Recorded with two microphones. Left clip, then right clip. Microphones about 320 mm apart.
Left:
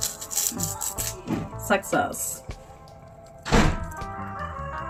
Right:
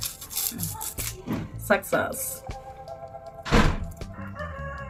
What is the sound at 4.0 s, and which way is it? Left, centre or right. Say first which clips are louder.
Chicken: left 5 dB; centre.